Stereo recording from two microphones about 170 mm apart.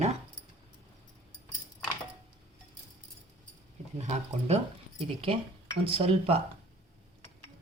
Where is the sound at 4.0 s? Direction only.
40° right (ahead or behind).